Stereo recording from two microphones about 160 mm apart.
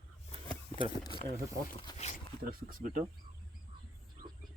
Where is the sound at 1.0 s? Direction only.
30° left (ahead or behind).